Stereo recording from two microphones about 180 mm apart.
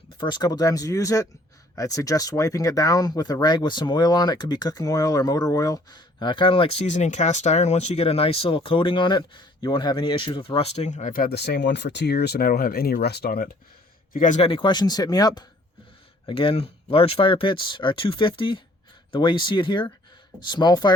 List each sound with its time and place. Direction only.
0.2 s speech: 25° left (ahead or behind); by 13.5 s 60° left (ahead or behind)
14.1 s speech: 45° left (ahead or behind); by 20.9 s 25° left (ahead or behind)